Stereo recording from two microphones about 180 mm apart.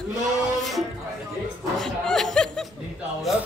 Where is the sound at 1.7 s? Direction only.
Centre (ahead or behind).